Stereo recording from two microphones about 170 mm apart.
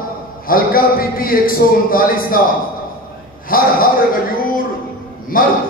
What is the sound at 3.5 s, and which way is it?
Speech, 60° left (ahead or behind).